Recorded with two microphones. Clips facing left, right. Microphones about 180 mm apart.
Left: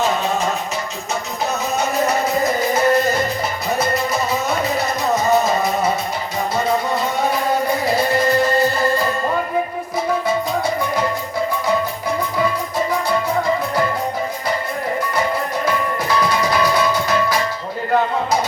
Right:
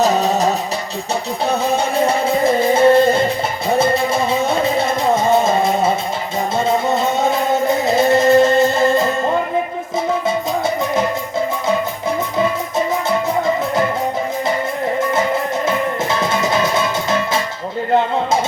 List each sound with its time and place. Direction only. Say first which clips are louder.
0.0 s music: right 4 dB; 40° right (ahead or behind)
15.6 s music: right 2 dB; 25° right (ahead or behind)